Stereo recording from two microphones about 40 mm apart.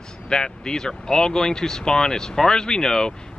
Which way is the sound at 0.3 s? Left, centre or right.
Centre.